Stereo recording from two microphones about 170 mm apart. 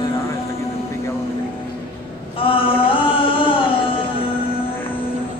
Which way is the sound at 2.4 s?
30° left (ahead or behind).